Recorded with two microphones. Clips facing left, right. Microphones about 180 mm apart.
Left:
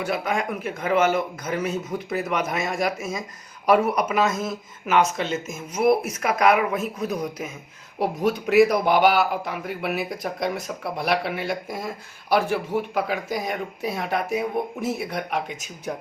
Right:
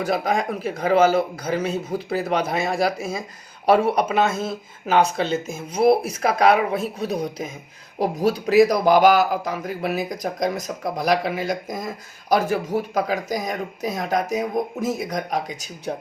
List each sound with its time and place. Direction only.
0.0 s speech: 35° right (ahead or behind)